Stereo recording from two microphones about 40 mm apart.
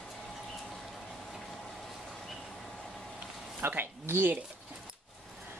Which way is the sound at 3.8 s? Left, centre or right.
Right.